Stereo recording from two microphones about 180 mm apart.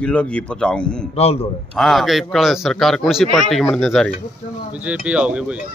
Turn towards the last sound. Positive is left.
turn(degrees=-5)  # may be behind; listen again after turning